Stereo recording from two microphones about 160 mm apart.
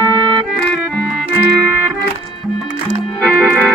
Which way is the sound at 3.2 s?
5° left (ahead or behind).